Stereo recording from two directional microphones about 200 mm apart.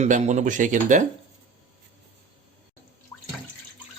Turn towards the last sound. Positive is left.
turn(degrees=15)  # may be behind; listen again after turning